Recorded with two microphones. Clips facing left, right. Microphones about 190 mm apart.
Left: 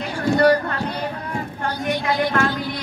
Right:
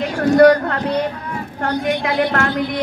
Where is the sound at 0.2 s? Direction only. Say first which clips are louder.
Right 6 dB; 55° right (ahead or behind).